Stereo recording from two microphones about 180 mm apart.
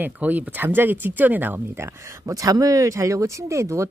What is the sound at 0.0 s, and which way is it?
A woman's voice, 10° right (ahead or behind).